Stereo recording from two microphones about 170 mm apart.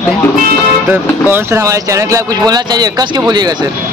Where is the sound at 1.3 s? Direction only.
15° right (ahead or behind).